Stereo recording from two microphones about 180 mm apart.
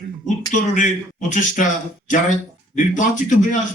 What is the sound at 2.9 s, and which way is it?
Speech, 40° left (ahead or behind).